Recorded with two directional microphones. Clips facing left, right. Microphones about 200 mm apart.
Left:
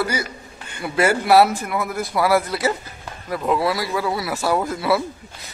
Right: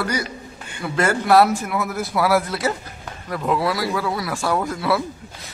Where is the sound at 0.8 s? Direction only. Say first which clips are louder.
Left 1 dB; 10° left (ahead or behind).